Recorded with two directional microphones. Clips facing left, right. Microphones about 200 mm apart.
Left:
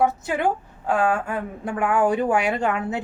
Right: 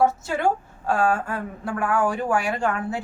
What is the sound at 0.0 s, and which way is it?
A woman's voice, 15° left (ahead or behind).